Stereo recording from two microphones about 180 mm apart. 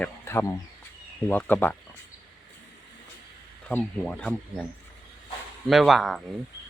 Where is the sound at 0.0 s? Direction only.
15° left (ahead or behind).